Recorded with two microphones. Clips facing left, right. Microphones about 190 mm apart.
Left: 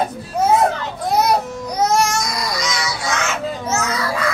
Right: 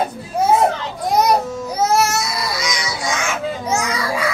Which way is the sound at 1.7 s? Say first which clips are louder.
Even; 5° right (ahead or behind).